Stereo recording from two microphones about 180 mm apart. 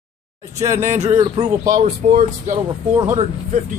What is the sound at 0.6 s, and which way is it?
Speech, 15° right (ahead or behind).